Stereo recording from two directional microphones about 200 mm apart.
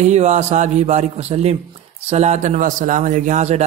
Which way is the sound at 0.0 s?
35° right (ahead or behind).